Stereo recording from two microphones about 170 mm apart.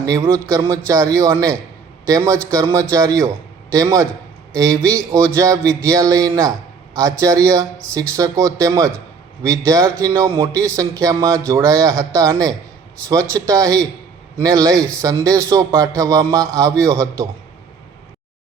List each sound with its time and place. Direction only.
0.0 s a man's voice: 20° right (ahead or behind)